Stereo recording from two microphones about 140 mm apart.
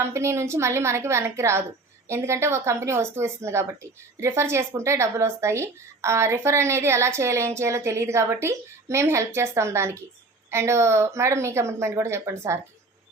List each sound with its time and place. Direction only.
0.0 s speech: 20° right (ahead or behind)